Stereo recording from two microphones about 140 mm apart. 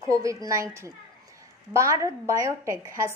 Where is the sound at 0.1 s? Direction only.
25° right (ahead or behind).